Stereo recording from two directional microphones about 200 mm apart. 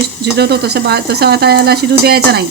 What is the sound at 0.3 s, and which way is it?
Speech, 55° right (ahead or behind).